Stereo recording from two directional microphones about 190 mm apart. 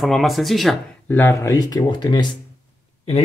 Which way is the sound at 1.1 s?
10° left (ahead or behind).